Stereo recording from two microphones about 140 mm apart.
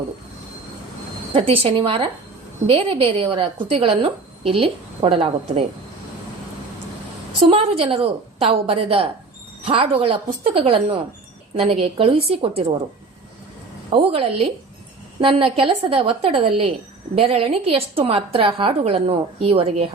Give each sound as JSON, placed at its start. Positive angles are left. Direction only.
{"t": 1.3, "sound": "a woman's voice", "side_deg": -40}
{"t": 7.3, "sound": "a woman's voice", "side_deg": -45}
{"t": 13.9, "sound": "a woman's voice", "side_deg": -45}